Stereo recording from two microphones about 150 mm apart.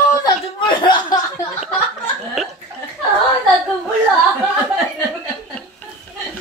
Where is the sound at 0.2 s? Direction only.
30° left (ahead or behind).